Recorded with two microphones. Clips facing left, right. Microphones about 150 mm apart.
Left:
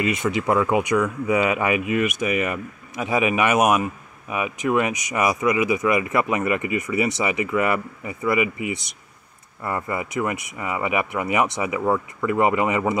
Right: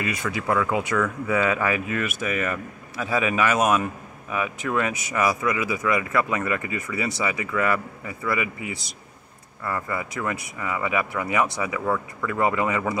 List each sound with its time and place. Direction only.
0.0 s speech: 20° left (ahead or behind)